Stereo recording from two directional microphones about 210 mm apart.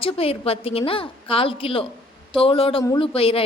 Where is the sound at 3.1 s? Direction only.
25° left (ahead or behind).